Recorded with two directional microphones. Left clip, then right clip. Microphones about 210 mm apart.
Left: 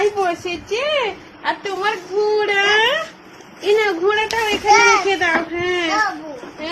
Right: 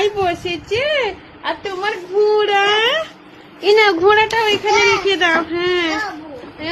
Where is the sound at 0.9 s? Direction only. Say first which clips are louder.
Right 1 dB; 20° right (ahead or behind).